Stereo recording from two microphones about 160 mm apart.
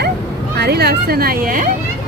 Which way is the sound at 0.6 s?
85° right.